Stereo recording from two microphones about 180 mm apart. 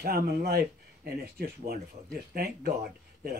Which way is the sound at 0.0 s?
55° right (ahead or behind).